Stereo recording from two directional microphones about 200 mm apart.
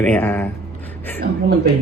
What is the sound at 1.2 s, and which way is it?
Speech, 50° right (ahead or behind).